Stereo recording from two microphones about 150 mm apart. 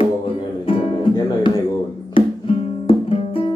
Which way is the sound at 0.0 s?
40° left (ahead or behind).